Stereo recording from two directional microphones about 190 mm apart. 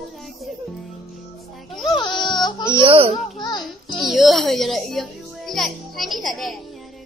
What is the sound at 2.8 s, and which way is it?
Speech, 30° right (ahead or behind).